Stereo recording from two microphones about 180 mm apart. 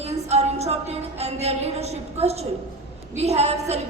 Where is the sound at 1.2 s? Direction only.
35° right (ahead or behind).